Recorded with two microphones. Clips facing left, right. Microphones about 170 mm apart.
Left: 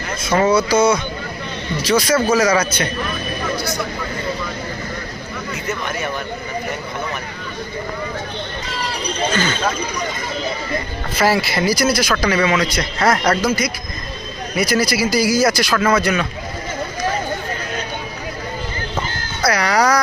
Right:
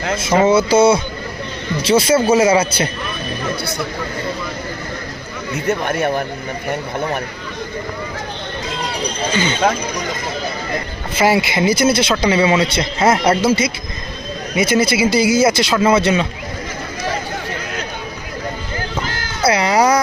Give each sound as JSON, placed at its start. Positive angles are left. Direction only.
{"t": 0.2, "sound": "speech", "side_deg": -25}
{"t": 5.6, "sound": "speech", "side_deg": -55}
{"t": 9.3, "sound": "speech", "side_deg": -20}
{"t": 11.2, "sound": "speech", "side_deg": -20}
{"t": 19.0, "sound": "music", "side_deg": -90}
{"t": 19.5, "sound": "music", "side_deg": -25}